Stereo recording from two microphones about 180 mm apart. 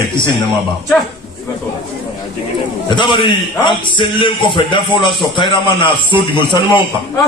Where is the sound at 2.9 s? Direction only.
25° left (ahead or behind).